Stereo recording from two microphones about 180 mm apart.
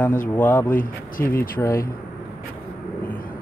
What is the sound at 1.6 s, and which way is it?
Speech, 10° left (ahead or behind).